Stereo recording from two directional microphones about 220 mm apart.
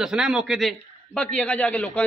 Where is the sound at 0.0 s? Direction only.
Centre (ahead or behind).